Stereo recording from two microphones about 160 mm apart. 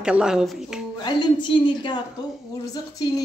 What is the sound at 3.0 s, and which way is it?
Speech, 25° left (ahead or behind).